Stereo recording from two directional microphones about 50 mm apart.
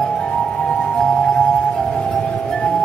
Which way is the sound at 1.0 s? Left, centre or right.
Centre.